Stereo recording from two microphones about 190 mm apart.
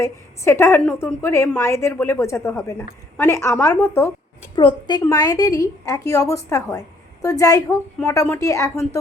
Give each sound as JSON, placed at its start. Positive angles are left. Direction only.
{"t": 0.0, "sound": "a woman's voice", "side_deg": 10}
{"t": 4.5, "sound": "a woman's voice", "side_deg": 25}